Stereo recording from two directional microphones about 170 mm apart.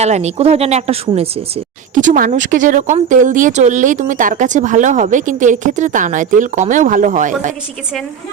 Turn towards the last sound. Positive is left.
turn(degrees=-50)  # may be behind; listen again after turning